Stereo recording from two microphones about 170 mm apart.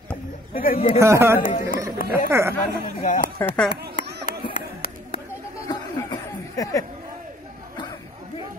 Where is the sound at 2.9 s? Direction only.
50° left (ahead or behind).